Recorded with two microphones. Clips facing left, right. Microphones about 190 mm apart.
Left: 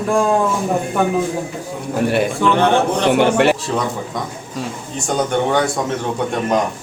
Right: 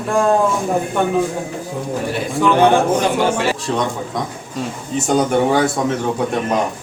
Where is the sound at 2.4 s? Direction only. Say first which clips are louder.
Right 5 dB; 10° right (ahead or behind).